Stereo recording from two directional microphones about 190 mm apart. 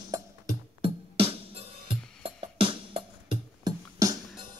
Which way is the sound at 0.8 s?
30° right (ahead or behind).